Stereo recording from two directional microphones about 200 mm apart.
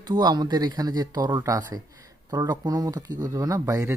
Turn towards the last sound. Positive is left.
turn(degrees=-15)  # may be behind; listen again after turning